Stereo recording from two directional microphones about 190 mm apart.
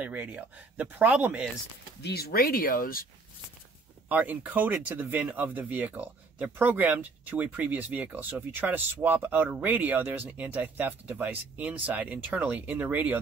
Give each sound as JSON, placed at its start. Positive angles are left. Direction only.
{"t": 0.0, "sound": "speech", "side_deg": -10}
{"t": 2.0, "sound": "speech", "side_deg": 60}
{"t": 4.1, "sound": "speech", "side_deg": -10}